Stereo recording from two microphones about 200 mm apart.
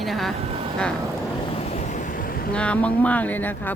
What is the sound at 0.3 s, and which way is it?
Speech, 30° right (ahead or behind).